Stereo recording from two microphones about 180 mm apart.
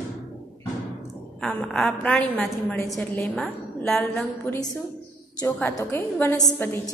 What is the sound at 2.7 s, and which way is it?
A woman's voice, 15° left (ahead or behind).